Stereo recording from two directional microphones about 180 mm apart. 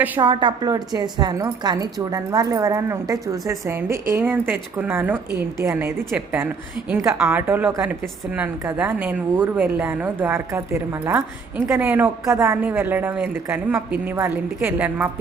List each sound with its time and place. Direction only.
0.2 s a woman's voice: 25° right (ahead or behind); by 15.1 s 10° right (ahead or behind)